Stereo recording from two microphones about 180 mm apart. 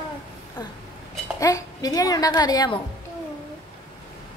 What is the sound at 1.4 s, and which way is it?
Speech, 20° left (ahead or behind).